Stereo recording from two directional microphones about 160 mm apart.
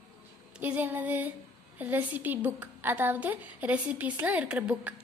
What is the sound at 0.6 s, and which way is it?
A woman's voice, 10° right (ahead or behind).